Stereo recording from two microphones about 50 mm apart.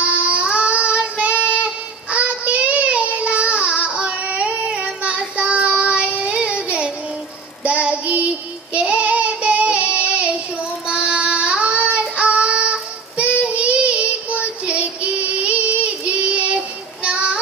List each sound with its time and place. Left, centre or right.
0.0 s child singing: right